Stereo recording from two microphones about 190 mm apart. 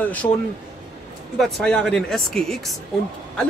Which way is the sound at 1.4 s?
5° left (ahead or behind).